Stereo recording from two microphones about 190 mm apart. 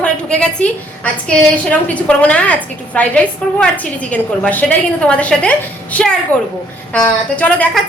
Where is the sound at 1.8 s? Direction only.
5° left (ahead or behind).